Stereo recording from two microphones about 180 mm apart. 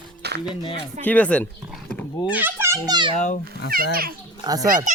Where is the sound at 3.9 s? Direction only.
55° right (ahead or behind).